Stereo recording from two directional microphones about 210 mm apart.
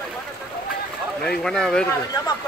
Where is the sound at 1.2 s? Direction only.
5° left (ahead or behind).